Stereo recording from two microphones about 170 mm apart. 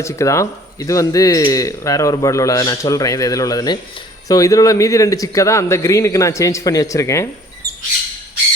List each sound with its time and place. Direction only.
0.0 s speech: 15° left (ahead or behind)